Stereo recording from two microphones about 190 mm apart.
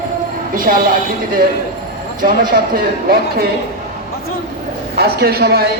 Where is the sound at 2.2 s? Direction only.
50° right (ahead or behind).